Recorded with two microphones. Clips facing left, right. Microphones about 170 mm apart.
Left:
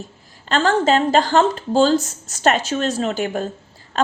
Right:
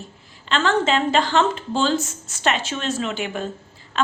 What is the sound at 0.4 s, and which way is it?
A woman's voice, 40° left (ahead or behind).